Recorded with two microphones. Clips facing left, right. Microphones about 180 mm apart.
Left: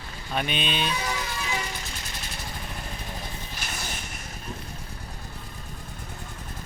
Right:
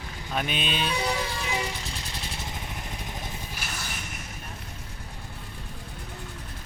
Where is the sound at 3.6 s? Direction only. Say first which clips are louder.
Left 2 dB; 5° right (ahead or behind).